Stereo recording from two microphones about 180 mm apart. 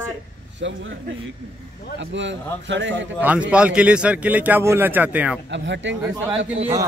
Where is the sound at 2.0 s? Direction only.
90° right.